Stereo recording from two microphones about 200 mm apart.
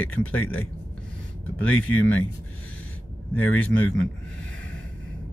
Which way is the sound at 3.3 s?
10° left (ahead or behind).